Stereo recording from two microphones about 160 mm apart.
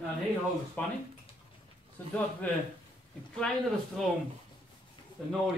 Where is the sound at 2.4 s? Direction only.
10° left (ahead or behind).